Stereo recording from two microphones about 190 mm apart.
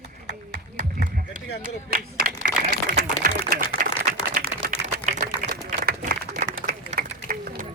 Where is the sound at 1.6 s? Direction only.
50° right (ahead or behind).